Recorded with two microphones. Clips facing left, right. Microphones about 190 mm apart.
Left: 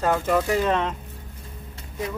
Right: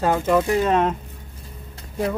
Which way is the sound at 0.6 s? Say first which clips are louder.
Right 4 dB; 45° right (ahead or behind).